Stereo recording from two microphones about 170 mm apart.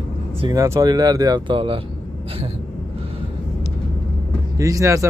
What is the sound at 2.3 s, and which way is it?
Vehicle, 35° right (ahead or behind).